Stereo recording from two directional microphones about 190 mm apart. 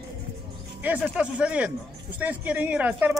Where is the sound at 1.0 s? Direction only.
5° right (ahead or behind).